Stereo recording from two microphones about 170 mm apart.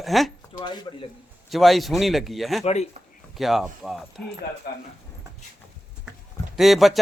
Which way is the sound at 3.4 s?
Centre (ahead or behind).